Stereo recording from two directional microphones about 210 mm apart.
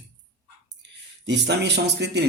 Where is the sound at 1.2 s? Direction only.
55° right (ahead or behind).